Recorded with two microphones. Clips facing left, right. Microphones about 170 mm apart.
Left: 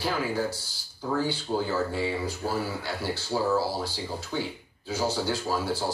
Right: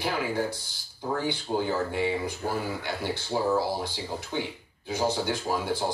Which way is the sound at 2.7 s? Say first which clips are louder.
Even; 20° right (ahead or behind).